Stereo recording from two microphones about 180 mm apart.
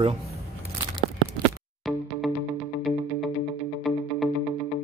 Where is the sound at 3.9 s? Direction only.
Centre (ahead or behind).